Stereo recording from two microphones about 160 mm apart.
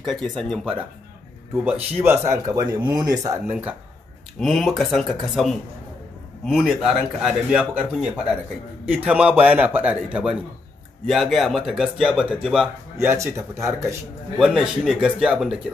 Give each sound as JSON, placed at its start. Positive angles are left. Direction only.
{"t": 0.0, "sound": "a man's voice", "side_deg": 5}
{"t": 1.6, "sound": "speech", "side_deg": -10}
{"t": 3.4, "sound": "a man's voice", "side_deg": -10}
{"t": 12.9, "sound": "a man's voice", "side_deg": -15}
{"t": 14.4, "sound": "a man's voice", "side_deg": -5}